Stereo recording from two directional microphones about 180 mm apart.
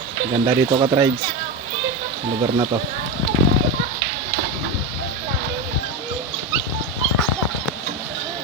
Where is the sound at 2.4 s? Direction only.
25° right (ahead or behind).